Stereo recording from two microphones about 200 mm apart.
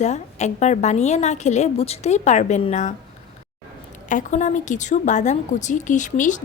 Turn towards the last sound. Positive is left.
turn(degrees=40)  # may be behind; listen again after turning